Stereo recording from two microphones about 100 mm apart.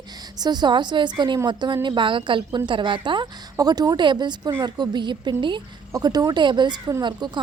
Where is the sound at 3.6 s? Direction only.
40° right (ahead or behind).